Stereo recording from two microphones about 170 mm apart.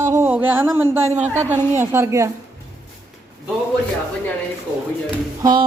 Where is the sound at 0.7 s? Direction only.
15° right (ahead or behind).